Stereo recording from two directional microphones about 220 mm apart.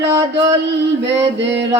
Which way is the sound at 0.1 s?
15° right (ahead or behind).